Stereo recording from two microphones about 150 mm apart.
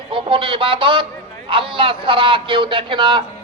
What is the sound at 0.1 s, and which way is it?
A man's voice, 35° right (ahead or behind).